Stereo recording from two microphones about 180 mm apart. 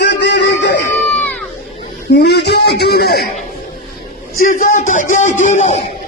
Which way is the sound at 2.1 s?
70° left (ahead or behind).